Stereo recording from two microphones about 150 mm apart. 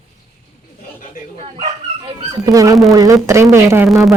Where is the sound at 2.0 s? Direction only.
25° right (ahead or behind).